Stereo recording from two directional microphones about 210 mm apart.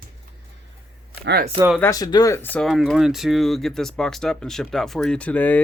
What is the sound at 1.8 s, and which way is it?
Speech, 15° left (ahead or behind).